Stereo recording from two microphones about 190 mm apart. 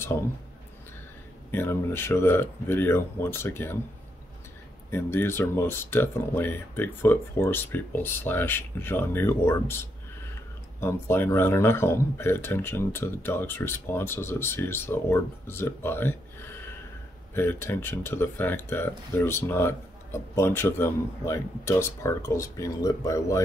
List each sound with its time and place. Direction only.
1.5 s speech: 10° left (ahead or behind)
4.9 s speech: 10° left (ahead or behind)
17.3 s speech: 10° left (ahead or behind)